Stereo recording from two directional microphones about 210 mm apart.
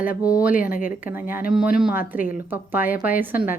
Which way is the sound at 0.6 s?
40° left (ahead or behind).